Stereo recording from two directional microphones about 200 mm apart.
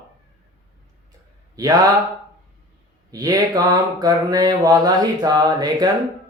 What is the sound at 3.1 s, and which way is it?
Mantra, 20° right (ahead or behind).